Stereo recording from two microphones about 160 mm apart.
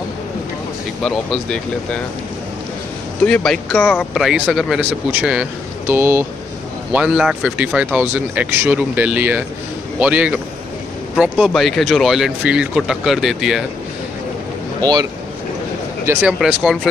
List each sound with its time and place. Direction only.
1.0 s speech: 5° left (ahead or behind)
3.3 s speech: 5° left (ahead or behind)
14.8 s speech: 25° right (ahead or behind)
16.1 s speech: 10° right (ahead or behind)